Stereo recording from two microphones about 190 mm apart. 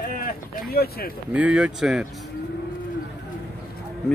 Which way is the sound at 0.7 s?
55° left (ahead or behind).